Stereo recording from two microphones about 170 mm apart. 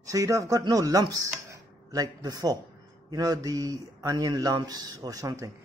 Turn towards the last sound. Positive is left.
turn(degrees=-20)  # may be behind; listen again after turning